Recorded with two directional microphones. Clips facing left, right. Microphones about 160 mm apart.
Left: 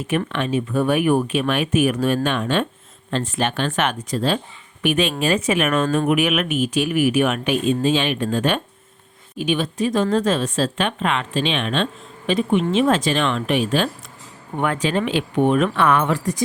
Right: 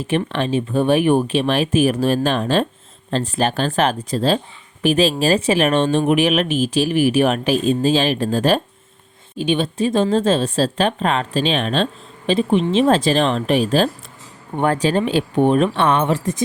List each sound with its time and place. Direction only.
0.3 s speech: 30° right (ahead or behind)